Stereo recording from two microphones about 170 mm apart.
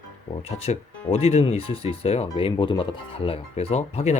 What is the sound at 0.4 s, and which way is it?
Speech, 35° left (ahead or behind).